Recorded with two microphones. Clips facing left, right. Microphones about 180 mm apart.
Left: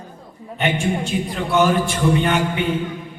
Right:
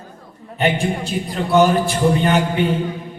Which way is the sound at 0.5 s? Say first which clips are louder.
Right 2 dB; 35° right (ahead or behind).